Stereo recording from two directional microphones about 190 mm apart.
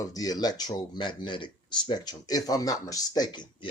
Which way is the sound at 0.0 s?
20° left (ahead or behind).